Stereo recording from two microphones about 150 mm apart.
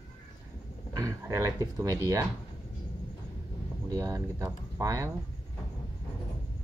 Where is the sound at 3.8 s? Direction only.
20° right (ahead or behind).